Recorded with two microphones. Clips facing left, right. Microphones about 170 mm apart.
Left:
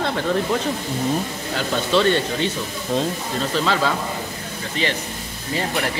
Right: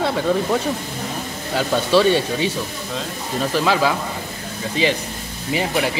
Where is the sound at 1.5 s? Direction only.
10° right (ahead or behind).